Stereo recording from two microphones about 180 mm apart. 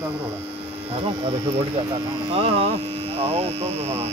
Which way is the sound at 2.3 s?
35° right (ahead or behind).